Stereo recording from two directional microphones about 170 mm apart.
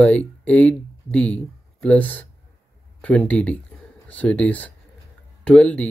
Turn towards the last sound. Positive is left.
turn(degrees=5)  # may be behind; listen again after turning